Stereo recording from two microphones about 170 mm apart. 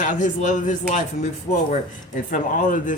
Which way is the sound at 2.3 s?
50° left (ahead or behind).